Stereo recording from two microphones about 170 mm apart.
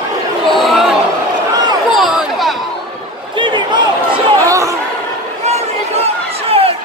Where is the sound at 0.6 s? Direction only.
Centre (ahead or behind).